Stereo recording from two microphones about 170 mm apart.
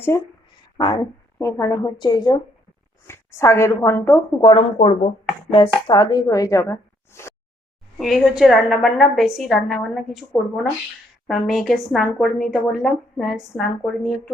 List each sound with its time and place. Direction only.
0.1 s a woman's voice: 20° left (ahead or behind)
4.4 s speech: 30° left (ahead or behind)
7.9 s a woman's voice: centre (ahead or behind)